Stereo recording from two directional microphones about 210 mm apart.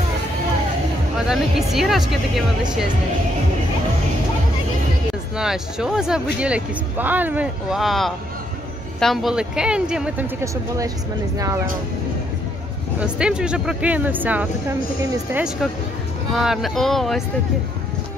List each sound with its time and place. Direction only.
1.2 s speech: centre (ahead or behind)
5.4 s speech: centre (ahead or behind)
13.0 s speech: 5° right (ahead or behind)